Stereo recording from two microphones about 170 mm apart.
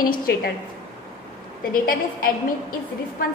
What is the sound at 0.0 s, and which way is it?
Speech, 60° left (ahead or behind).